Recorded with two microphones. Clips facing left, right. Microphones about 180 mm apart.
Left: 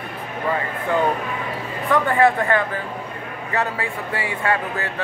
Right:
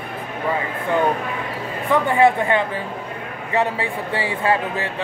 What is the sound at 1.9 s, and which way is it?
Speech, 15° right (ahead or behind).